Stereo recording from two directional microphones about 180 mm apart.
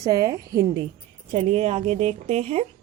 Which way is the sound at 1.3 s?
35° right (ahead or behind).